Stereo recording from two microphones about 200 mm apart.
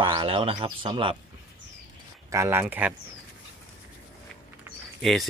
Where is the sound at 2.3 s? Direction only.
15° right (ahead or behind).